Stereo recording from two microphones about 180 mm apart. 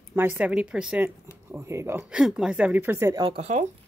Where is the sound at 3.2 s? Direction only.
35° right (ahead or behind).